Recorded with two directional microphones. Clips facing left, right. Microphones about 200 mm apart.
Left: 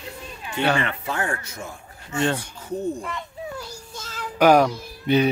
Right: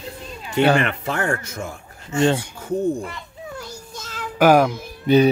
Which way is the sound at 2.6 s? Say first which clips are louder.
Right 5 dB; 50° right (ahead or behind).